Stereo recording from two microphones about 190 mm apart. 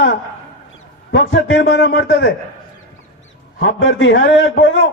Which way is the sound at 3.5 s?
70° left (ahead or behind).